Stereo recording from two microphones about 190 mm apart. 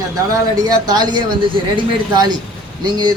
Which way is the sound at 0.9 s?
20° right (ahead or behind).